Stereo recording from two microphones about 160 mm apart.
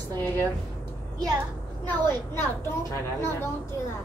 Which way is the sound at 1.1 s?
25° right (ahead or behind).